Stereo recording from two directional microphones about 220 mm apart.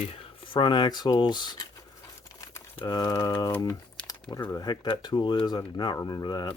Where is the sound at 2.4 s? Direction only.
15° left (ahead or behind).